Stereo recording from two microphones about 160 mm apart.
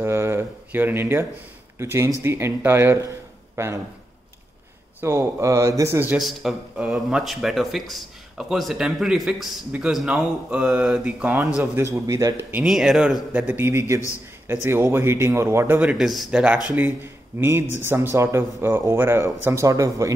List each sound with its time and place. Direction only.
0.0 s a man's voice: 15° right (ahead or behind)
5.0 s a man's voice: 15° right (ahead or behind)
6.1 s speech: centre (ahead or behind)
11.6 s a man's voice: 15° right (ahead or behind)
12.6 s a man's voice: centre (ahead or behind); by 20.1 s 20° right (ahead or behind)